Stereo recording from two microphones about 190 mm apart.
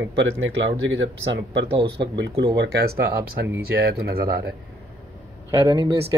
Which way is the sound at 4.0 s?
55° right (ahead or behind).